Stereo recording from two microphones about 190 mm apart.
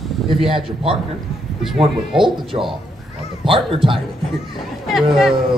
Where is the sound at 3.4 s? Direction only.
25° right (ahead or behind).